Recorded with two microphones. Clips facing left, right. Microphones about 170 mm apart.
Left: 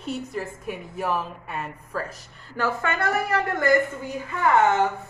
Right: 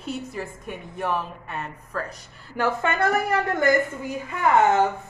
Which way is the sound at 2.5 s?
20° right (ahead or behind).